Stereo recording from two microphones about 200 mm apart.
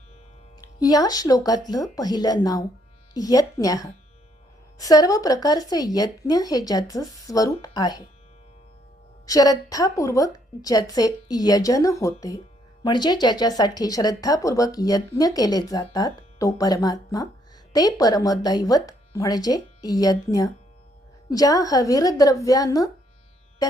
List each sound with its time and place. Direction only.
0.8 s speech: 20° left (ahead or behind)
9.2 s a woman's voice: 20° left (ahead or behind)